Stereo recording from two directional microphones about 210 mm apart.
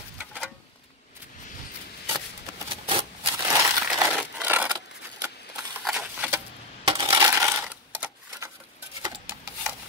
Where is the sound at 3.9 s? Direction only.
5° right (ahead or behind).